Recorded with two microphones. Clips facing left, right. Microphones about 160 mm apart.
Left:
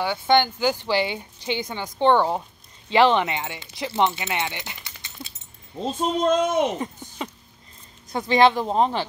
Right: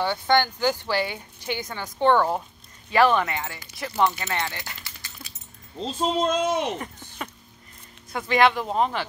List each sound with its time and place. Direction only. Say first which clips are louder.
0.0 s speech: left 2 dB; 15° left (ahead or behind)
5.9 s speech: left 2 dB; 50° left (ahead or behind)
6.8 s a sound: left 5 dB; 20° left (ahead or behind)
8.1 s speech: left 3 dB; 25° left (ahead or behind)